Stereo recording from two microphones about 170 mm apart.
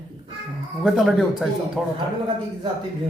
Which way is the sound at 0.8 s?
Centre (ahead or behind).